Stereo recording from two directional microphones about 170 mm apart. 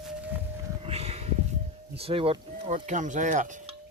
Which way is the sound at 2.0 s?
35° right (ahead or behind).